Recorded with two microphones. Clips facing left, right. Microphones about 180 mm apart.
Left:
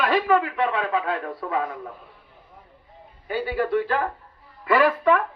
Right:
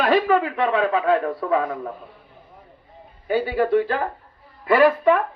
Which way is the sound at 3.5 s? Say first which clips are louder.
Right 1 dB; 40° right (ahead or behind).